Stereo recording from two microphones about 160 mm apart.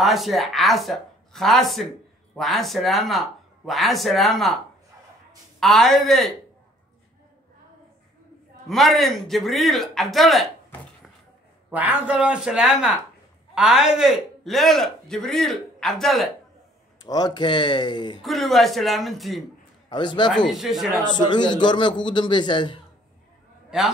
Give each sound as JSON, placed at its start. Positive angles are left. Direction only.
{"t": 0.0, "sound": "a man's voice", "side_deg": 0}
{"t": 5.6, "sound": "a man's voice", "side_deg": 0}
{"t": 8.6, "sound": "a man's voice", "side_deg": 0}
{"t": 17.0, "sound": "a man's voice", "side_deg": 25}
{"t": 18.2, "sound": "a man's voice", "side_deg": 0}
{"t": 19.9, "sound": "a man's voice", "side_deg": 30}
{"t": 20.2, "sound": "a man's voice", "side_deg": 0}
{"t": 21.1, "sound": "a man's voice", "side_deg": 30}